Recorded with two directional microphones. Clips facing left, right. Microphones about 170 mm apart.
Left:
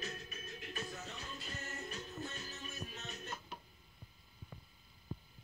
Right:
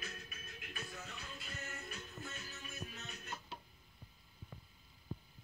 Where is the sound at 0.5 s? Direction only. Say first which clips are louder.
Left 4 dB; 30° left (ahead or behind).